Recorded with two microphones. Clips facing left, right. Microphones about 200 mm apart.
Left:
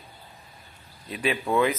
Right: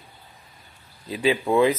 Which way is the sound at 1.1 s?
25° right (ahead or behind).